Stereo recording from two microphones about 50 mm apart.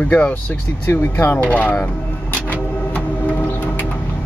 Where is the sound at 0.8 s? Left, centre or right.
Left.